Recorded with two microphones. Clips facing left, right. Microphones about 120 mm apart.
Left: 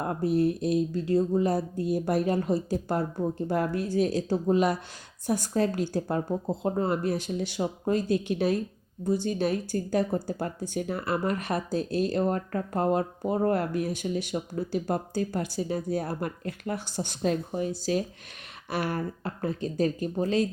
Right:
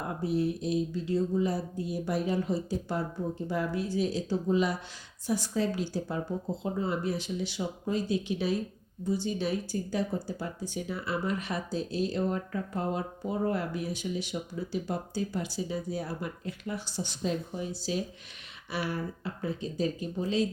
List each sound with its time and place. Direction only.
0.1 s speech: 50° left (ahead or behind)